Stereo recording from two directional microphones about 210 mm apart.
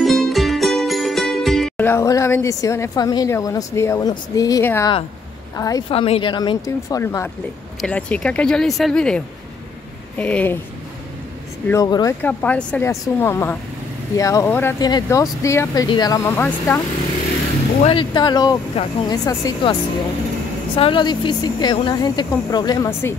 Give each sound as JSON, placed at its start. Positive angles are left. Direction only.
{"t": 0.0, "sound": "music", "side_deg": 0}
{"t": 5.6, "sound": "speech", "side_deg": 15}
{"t": 11.7, "sound": "speech", "side_deg": 15}
{"t": 17.8, "sound": "speech", "side_deg": 20}
{"t": 20.7, "sound": "speech", "side_deg": 25}